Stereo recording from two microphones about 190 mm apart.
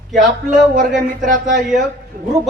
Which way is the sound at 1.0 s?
45° right (ahead or behind).